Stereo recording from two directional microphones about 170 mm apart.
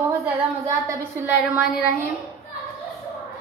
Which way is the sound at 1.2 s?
10° right (ahead or behind).